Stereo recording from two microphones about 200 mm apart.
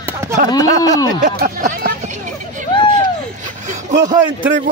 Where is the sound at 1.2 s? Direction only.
45° right (ahead or behind).